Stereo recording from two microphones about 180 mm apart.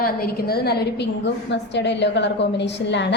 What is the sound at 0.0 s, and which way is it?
A woman's voice, 60° left (ahead or behind).